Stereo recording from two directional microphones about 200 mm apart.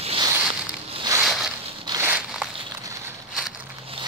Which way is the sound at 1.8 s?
20° right (ahead or behind).